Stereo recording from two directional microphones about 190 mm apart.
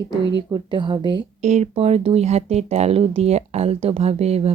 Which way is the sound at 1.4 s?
35° right (ahead or behind).